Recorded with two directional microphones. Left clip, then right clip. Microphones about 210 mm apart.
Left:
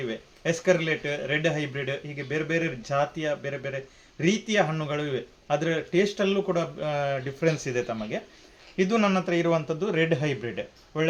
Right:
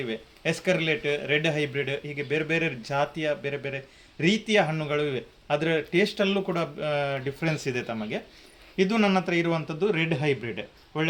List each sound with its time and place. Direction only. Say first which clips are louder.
0.1 s a man's voice: even; 10° left (ahead or behind)